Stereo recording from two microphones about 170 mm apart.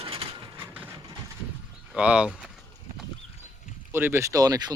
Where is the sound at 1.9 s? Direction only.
5° right (ahead or behind).